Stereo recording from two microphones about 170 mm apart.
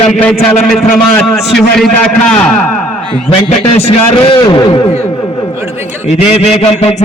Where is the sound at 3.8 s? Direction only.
30° left (ahead or behind).